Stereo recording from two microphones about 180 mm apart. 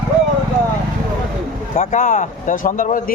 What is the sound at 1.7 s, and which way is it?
Speech, 45° left (ahead or behind).